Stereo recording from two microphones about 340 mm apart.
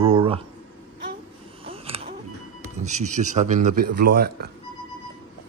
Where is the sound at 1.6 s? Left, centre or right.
Centre.